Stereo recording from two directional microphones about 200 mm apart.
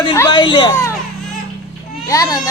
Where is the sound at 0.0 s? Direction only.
20° left (ahead or behind).